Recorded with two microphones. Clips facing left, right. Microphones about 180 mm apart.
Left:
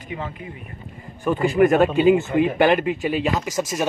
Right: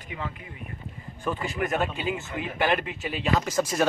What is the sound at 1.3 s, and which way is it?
Speech, 65° left (ahead or behind).